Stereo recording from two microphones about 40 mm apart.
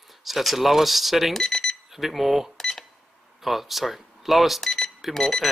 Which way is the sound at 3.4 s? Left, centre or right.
Centre.